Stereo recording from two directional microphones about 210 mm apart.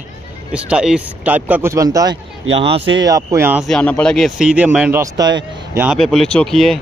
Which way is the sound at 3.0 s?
15° right (ahead or behind).